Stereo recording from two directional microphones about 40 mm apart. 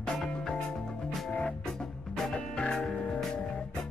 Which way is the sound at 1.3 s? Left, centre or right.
Left.